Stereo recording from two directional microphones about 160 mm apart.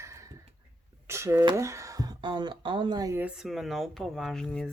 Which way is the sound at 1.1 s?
20° right (ahead or behind).